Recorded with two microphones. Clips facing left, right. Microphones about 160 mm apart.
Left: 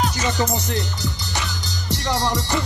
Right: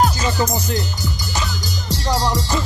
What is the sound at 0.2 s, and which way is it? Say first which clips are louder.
Music: right 2 dB; 25° left (ahead or behind).